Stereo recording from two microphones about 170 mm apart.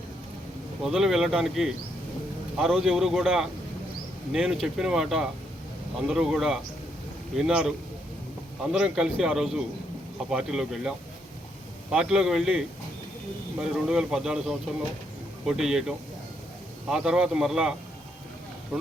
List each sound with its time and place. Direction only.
0.8 s a man's voice: centre (ahead or behind)
8.7 s a man's voice: 5° right (ahead or behind)